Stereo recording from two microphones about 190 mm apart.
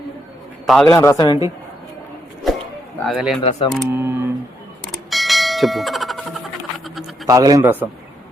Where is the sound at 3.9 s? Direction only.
10° right (ahead or behind).